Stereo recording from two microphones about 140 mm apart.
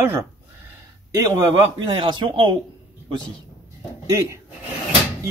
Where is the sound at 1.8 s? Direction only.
35° right (ahead or behind).